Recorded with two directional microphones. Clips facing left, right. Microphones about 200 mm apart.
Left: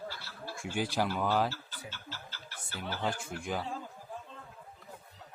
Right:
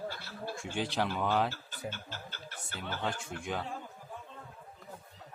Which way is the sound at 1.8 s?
50° right (ahead or behind).